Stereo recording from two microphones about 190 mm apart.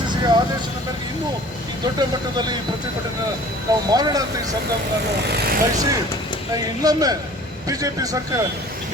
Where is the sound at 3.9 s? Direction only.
20° right (ahead or behind).